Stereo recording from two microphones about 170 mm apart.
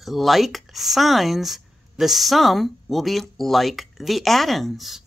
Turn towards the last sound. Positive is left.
turn(degrees=0)  # may be behind; listen again after turning